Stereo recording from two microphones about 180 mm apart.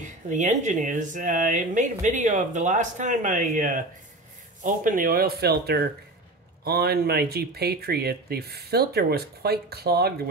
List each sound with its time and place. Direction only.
0.0 s speech: 45° right (ahead or behind); by 10.1 s 60° right (ahead or behind)